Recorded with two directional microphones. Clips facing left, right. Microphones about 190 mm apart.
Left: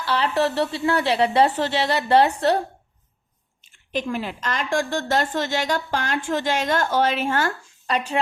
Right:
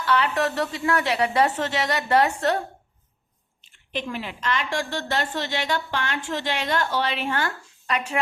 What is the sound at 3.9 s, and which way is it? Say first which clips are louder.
A woman's voice: left 4 dB; 40° left (ahead or behind).